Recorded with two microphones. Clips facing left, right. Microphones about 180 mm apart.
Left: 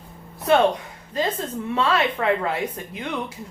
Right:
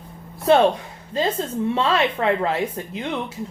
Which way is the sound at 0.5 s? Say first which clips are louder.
Right 2 dB; 30° right (ahead or behind).